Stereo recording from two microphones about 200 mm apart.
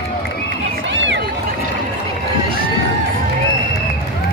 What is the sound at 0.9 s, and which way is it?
Run, 65° right (ahead or behind).